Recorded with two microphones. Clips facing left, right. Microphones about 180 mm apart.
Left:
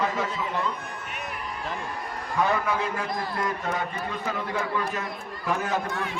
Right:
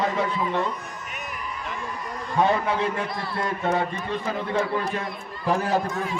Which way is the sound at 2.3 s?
25° right (ahead or behind).